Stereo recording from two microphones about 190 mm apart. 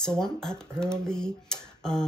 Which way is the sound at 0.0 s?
5° left (ahead or behind).